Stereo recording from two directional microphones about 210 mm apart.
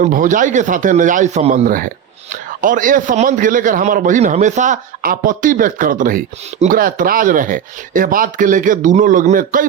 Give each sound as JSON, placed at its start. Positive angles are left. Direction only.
{"t": 0.0, "sound": "a man's voice", "side_deg": -40}